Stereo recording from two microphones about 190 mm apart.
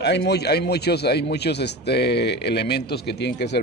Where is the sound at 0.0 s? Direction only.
60° left (ahead or behind).